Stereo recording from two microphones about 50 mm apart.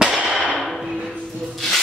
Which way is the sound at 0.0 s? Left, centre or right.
Centre.